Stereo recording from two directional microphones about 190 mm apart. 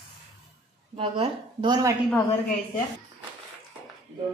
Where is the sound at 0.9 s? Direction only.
30° right (ahead or behind).